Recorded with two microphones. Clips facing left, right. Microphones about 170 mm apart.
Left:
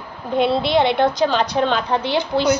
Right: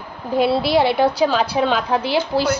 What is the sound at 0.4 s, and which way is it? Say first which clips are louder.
A woman's voice: even; 5° right (ahead or behind).